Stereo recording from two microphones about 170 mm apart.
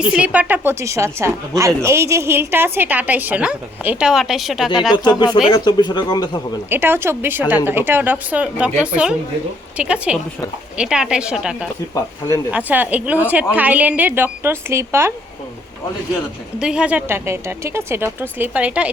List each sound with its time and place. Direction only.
0.1 s a woman's voice: 10° right (ahead or behind)
5.0 s speech: 25° left (ahead or behind)
6.7 s a woman's voice: 15° right (ahead or behind)
16.6 s a woman's voice: 5° right (ahead or behind)